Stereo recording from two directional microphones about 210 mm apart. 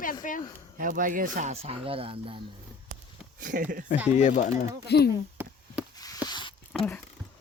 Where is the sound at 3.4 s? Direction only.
40° right (ahead or behind).